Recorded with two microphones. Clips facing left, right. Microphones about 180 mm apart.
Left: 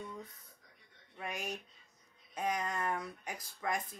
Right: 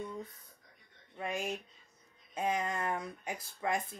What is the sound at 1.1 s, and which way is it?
Speech, 30° right (ahead or behind).